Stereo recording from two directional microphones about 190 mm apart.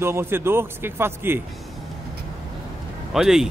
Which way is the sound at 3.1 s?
5° right (ahead or behind).